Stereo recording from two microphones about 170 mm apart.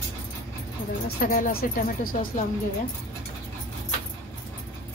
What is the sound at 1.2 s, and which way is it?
Speech, 55° left (ahead or behind).